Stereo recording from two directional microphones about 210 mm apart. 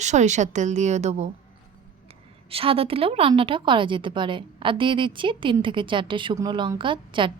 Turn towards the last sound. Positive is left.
turn(degrees=-25)  # may be behind; listen again after turning